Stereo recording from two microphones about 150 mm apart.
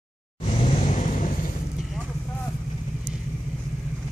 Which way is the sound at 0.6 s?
45° left (ahead or behind).